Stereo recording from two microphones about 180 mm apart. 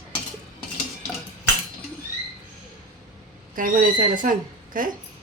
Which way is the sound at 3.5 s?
50° right (ahead or behind).